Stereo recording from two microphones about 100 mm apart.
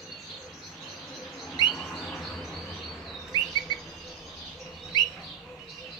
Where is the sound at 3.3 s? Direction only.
45° left (ahead or behind).